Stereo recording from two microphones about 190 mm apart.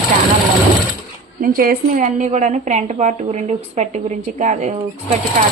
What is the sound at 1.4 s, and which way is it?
Speech, 50° right (ahead or behind).